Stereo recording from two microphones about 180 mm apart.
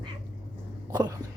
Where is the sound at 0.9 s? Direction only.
20° right (ahead or behind).